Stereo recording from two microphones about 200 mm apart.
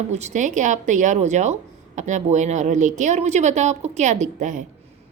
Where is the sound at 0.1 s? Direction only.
35° right (ahead or behind).